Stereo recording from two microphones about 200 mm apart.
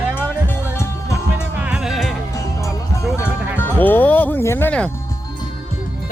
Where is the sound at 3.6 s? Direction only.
10° left (ahead or behind).